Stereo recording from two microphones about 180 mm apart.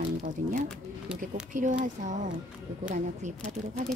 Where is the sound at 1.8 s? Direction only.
40° right (ahead or behind).